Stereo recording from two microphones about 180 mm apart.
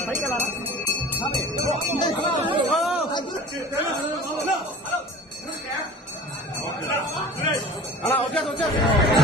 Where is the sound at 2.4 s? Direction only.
25° right (ahead or behind).